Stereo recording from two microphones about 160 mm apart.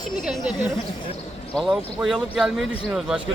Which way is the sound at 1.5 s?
5° right (ahead or behind).